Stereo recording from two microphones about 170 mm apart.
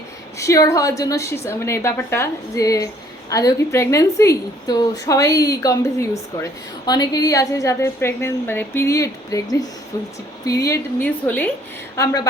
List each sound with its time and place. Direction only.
0.3 s a woman's voice: 20° left (ahead or behind)
11.9 s a woman's voice: 20° left (ahead or behind)